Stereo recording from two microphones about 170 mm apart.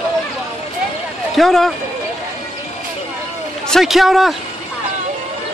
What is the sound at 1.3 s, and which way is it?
Speech, centre (ahead or behind).